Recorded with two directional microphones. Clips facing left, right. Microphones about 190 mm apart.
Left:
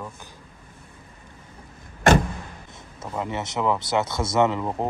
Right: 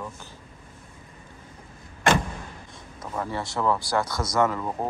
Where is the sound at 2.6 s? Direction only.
25° left (ahead or behind).